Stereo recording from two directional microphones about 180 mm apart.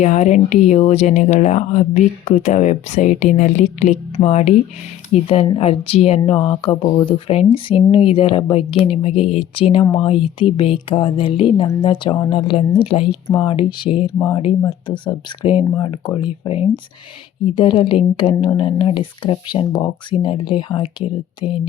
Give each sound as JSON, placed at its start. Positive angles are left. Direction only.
{"t": 0.0, "sound": "a woman's voice", "side_deg": 40}